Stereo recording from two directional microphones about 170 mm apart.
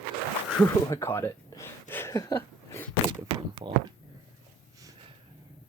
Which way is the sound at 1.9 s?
15° left (ahead or behind).